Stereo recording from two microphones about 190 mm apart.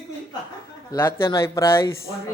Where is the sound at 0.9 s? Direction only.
15° left (ahead or behind).